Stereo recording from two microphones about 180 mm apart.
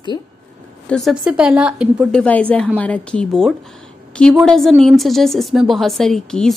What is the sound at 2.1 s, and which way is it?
A woman's voice, 5° left (ahead or behind).